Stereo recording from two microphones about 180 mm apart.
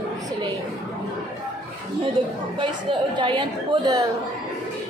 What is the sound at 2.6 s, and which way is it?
A woman's voice, 25° right (ahead or behind).